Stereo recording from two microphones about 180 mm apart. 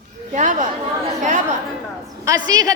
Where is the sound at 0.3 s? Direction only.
45° right (ahead or behind).